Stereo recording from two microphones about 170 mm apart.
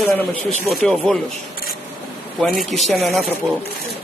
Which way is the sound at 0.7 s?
5° left (ahead or behind).